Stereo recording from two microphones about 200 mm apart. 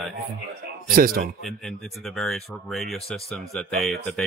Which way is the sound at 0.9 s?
45° right (ahead or behind).